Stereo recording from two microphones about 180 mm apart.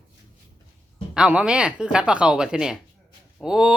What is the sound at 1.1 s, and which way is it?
Speech, 5° right (ahead or behind).